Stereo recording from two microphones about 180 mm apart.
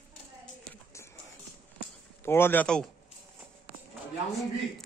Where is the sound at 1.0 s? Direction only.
15° left (ahead or behind).